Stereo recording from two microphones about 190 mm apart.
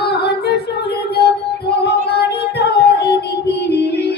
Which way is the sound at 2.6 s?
60° left (ahead or behind).